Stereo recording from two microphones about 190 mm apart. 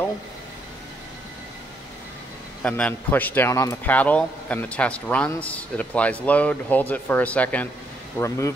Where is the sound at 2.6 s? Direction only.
10° left (ahead or behind).